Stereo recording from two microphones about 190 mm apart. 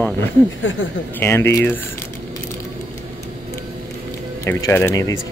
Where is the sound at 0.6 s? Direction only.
90° left.